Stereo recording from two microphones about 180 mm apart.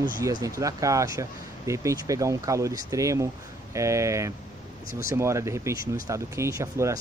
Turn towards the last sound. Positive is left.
turn(degrees=-15)  # may be behind; listen again after turning